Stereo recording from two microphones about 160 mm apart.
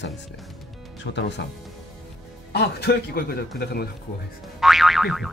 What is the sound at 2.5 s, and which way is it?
A man's voice, 85° left.